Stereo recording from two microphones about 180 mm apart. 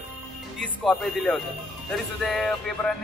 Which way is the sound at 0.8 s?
Centre (ahead or behind).